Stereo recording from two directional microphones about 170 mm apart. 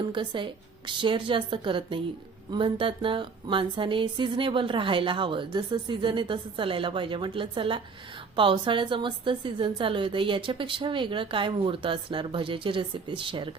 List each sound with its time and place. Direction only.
0.1 s speech: 30° right (ahead or behind)